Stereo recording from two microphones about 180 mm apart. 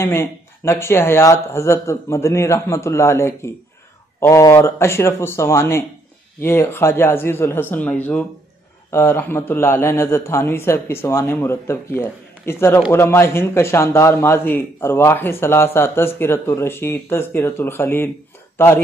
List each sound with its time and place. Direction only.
0.0 s a man's voice: 15° left (ahead or behind)